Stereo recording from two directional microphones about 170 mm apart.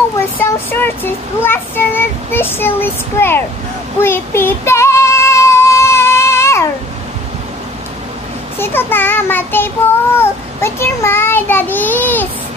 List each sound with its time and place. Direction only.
0.4 s speech: 10° left (ahead or behind)
4.0 s child singing: 15° left (ahead or behind)
8.5 s speech: 15° left (ahead or behind)